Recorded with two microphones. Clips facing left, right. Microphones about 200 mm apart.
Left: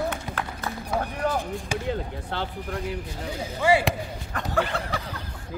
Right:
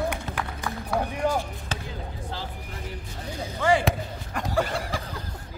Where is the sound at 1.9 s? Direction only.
65° left (ahead or behind).